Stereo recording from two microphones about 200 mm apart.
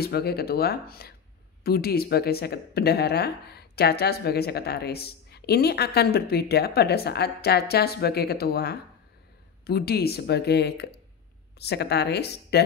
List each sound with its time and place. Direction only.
0.0 s speech: 50° left (ahead or behind)